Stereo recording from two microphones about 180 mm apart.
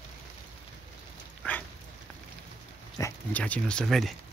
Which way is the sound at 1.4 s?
10° left (ahead or behind).